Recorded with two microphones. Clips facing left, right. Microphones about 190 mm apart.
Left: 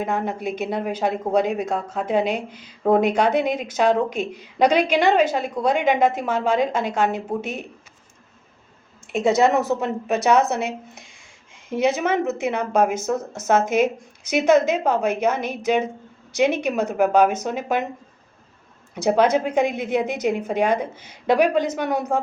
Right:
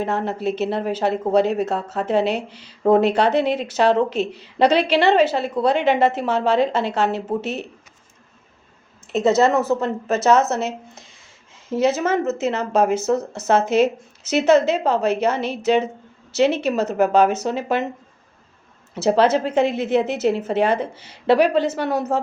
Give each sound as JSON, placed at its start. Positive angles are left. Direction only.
{"t": 0.0, "sound": "speech", "side_deg": 10}
{"t": 9.1, "sound": "speech", "side_deg": 15}
{"t": 10.6, "sound": "speech", "side_deg": 60}
{"t": 11.7, "sound": "speech", "side_deg": 15}
{"t": 18.9, "sound": "speech", "side_deg": 10}